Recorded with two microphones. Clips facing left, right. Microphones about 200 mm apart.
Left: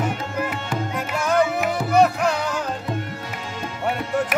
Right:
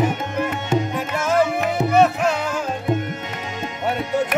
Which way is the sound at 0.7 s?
25° right (ahead or behind).